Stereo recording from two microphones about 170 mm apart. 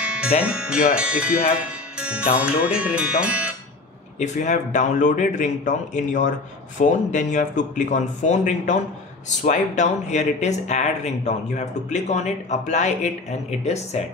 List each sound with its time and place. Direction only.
0.0 s music: 5° right (ahead or behind)
0.5 s speech: 5° right (ahead or behind)
1.6 s music: 5° right (ahead or behind)
2.4 s speech: 5° right (ahead or behind)
4.2 s speech: 45° left (ahead or behind)